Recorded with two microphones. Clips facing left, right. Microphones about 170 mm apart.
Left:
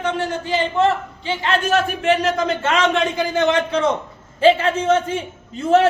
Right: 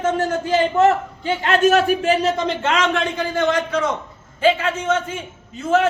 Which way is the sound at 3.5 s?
25° left (ahead or behind).